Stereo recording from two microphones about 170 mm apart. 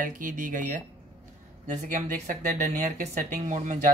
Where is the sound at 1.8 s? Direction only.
45° right (ahead or behind).